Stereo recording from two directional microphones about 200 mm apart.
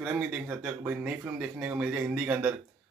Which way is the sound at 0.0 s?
5° right (ahead or behind).